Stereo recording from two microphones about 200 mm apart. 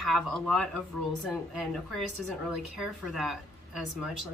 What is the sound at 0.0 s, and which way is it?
Speech, centre (ahead or behind).